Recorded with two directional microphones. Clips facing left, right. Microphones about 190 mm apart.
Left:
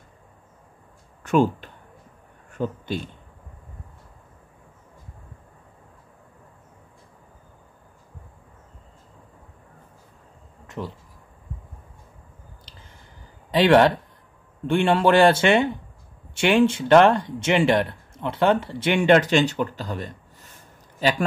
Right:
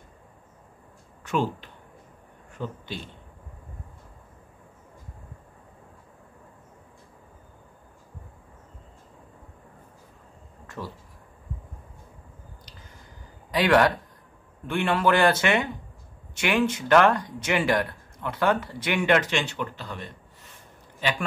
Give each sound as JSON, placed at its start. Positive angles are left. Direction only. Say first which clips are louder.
{"t": 1.2, "sound": "speech", "louder": "left 7 dB", "side_deg": 50}
{"t": 10.8, "sound": "speech", "louder": "left 4 dB", "side_deg": 20}
{"t": 13.5, "sound": "speech", "louder": "left 4 dB", "side_deg": 25}